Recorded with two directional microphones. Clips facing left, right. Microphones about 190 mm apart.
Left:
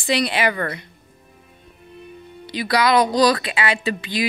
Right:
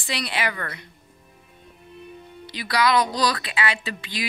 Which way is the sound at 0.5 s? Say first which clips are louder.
Left 8 dB; 30° left (ahead or behind).